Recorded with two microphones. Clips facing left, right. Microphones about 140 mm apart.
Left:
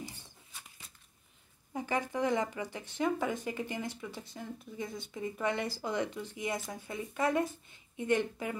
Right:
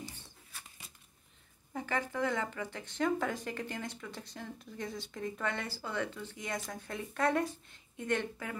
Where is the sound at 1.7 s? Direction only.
15° left (ahead or behind).